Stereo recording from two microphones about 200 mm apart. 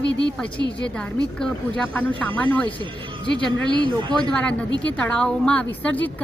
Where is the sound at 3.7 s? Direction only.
20° right (ahead or behind).